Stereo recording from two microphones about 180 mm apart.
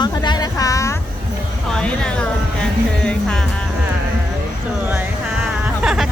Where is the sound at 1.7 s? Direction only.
5° left (ahead or behind).